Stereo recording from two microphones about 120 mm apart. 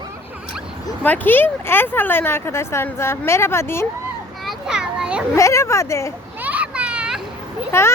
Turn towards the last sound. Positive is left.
turn(degrees=20)  # may be behind; listen again after turning